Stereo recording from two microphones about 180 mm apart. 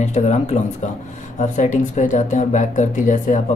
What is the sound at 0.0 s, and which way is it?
Speech, 40° left (ahead or behind).